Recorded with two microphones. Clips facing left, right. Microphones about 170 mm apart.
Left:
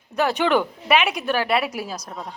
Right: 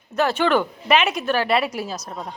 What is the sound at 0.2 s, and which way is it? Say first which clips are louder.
A woman's voice: right 1 dB; 15° left (ahead or behind).